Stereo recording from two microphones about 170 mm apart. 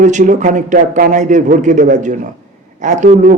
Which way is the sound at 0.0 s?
45° right (ahead or behind).